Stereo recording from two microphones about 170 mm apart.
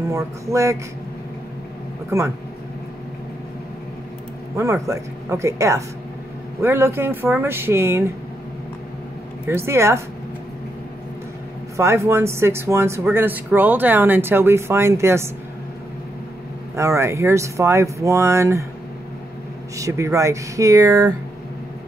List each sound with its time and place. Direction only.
0.1 s speech: 15° right (ahead or behind)
2.0 s speech: 15° right (ahead or behind)
4.6 s speech: 15° right (ahead or behind)
9.5 s speech: 15° right (ahead or behind)
11.7 s speech: 15° right (ahead or behind)
16.7 s speech: 15° right (ahead or behind)
19.8 s speech: 20° right (ahead or behind)